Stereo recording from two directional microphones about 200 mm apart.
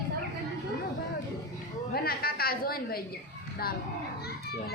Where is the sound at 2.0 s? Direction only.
50° left (ahead or behind).